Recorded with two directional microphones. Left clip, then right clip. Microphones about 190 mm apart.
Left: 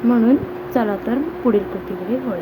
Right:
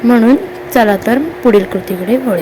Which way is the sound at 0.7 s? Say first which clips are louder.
Right 10 dB; 30° right (ahead or behind).